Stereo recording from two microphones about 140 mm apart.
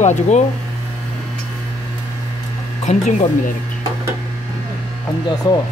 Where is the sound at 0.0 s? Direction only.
55° left (ahead or behind).